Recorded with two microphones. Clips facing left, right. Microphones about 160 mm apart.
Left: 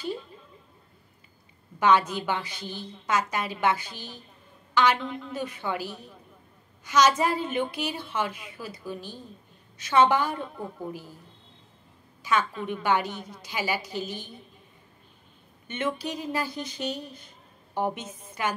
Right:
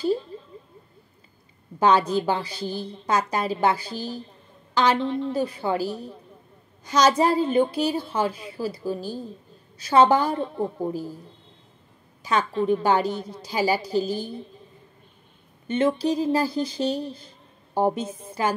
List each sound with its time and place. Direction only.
0.3 s a sound: 35° right (ahead or behind)
1.8 s a woman's voice: 35° right (ahead or behind)
12.2 s a woman's voice: 35° right (ahead or behind)
15.6 s a woman's voice: 35° right (ahead or behind)